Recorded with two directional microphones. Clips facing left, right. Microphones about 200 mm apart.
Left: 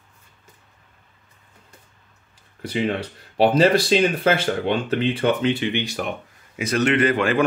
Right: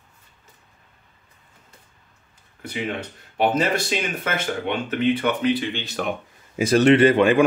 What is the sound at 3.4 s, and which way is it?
Speech, 35° left (ahead or behind).